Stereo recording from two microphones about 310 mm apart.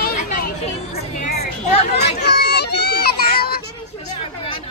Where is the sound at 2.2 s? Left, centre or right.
Left.